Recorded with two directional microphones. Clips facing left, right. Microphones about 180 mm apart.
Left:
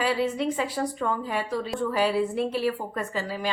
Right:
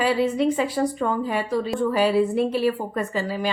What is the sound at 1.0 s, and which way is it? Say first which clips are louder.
Speech: right 4 dB; 25° right (ahead or behind).